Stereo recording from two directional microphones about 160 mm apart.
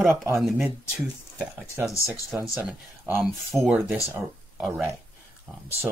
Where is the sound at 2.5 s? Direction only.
15° right (ahead or behind).